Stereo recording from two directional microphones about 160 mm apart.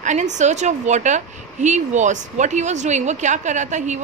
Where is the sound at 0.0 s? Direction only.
50° right (ahead or behind).